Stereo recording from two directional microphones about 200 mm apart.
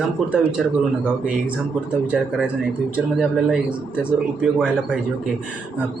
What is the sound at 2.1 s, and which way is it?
Speech, 5° right (ahead or behind).